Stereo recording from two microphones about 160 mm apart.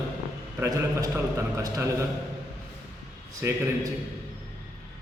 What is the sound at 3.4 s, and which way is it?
Speech, 15° right (ahead or behind).